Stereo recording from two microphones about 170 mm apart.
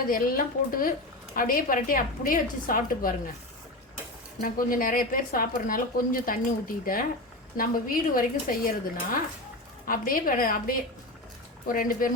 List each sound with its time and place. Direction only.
0.1 s a woman's voice: 55° left (ahead or behind)
4.4 s a woman's voice: 55° left (ahead or behind)
11.7 s a woman's voice: 55° left (ahead or behind)